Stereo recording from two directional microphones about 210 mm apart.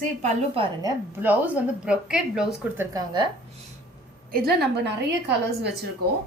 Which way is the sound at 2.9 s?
20° right (ahead or behind).